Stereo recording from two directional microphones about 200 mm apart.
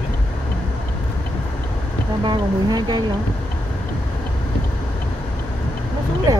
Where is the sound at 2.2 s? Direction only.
20° right (ahead or behind).